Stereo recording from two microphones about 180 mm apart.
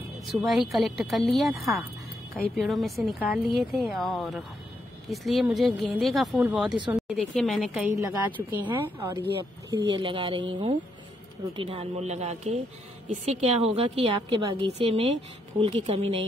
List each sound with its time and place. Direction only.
0.4 s speech: centre (ahead or behind)
2.5 s a woman's voice: centre (ahead or behind)
9.7 s a woman's voice: 25° right (ahead or behind)